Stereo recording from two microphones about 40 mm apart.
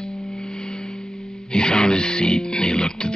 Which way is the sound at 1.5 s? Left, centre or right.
Left.